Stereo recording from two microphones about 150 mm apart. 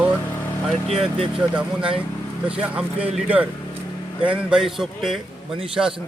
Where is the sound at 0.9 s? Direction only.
40° right (ahead or behind).